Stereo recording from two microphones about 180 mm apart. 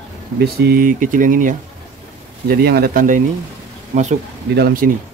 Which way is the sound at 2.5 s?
60° right (ahead or behind).